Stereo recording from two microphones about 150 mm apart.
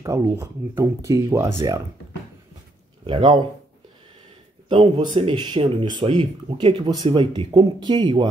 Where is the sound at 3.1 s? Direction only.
30° right (ahead or behind).